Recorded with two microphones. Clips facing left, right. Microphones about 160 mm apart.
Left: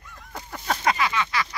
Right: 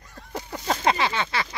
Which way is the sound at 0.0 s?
35° right (ahead or behind).